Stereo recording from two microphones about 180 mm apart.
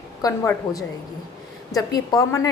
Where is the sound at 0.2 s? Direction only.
20° left (ahead or behind).